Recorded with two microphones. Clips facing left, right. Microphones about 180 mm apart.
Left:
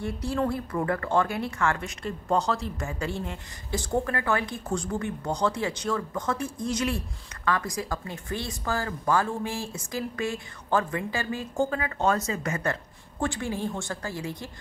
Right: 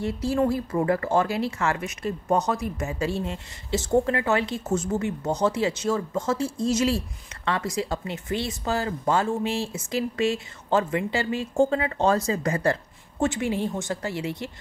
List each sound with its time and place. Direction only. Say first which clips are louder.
0.0 s a woman's voice: right 4 dB; 25° right (ahead or behind)
13.2 s a woman's voice: right 4 dB; 20° right (ahead or behind)